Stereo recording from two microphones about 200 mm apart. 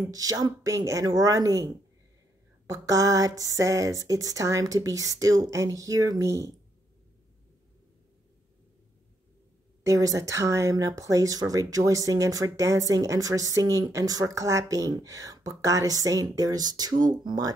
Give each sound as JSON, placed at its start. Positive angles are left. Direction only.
{"t": 0.1, "sound": "speech", "side_deg": -15}
{"t": 9.8, "sound": "speech", "side_deg": -15}